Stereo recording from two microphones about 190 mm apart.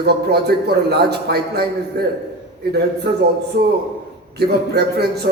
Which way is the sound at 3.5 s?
55° right (ahead or behind).